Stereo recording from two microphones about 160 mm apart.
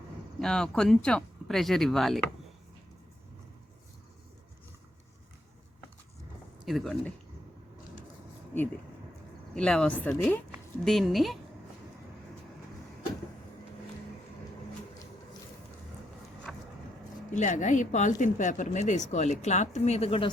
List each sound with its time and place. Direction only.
0.3 s speech: 5° left (ahead or behind)
6.7 s speech: centre (ahead or behind)
9.6 s speech: 5° left (ahead or behind)
16.5 s vehicle: centre (ahead or behind)
17.3 s speech: 50° left (ahead or behind); by 20.3 s 35° left (ahead or behind)